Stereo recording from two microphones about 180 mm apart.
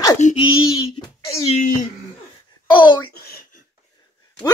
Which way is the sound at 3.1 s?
55° left (ahead or behind).